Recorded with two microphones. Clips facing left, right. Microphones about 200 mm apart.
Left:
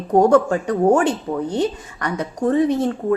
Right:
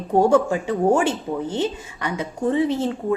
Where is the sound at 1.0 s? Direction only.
25° right (ahead or behind).